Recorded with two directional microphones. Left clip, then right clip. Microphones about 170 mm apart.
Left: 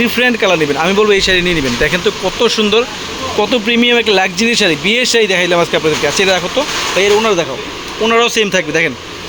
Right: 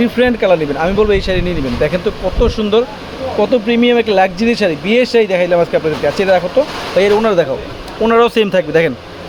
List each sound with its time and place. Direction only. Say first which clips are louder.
0.0 s speech: left 1 dB; 10° right (ahead or behind)
7.0 s speech: right 1 dB; 40° right (ahead or behind); by 8.9 s 25° right (ahead or behind)